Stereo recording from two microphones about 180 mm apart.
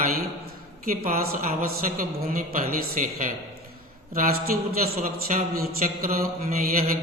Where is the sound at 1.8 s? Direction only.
45° right (ahead or behind).